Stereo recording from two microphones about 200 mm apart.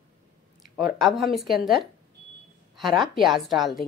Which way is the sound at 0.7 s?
Centre (ahead or behind).